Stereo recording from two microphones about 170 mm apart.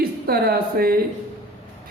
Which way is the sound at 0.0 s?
65° right (ahead or behind).